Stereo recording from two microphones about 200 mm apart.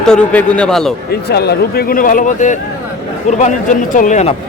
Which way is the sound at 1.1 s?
55° left (ahead or behind).